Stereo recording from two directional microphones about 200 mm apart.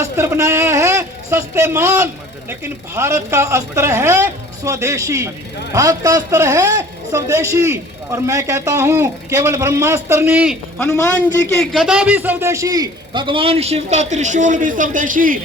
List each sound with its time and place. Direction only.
0.0 s a man's voice: 15° right (ahead or behind)
10.8 s a man's voice: 15° left (ahead or behind)
11.6 s a man's voice: centre (ahead or behind); by 15.4 s 40° right (ahead or behind)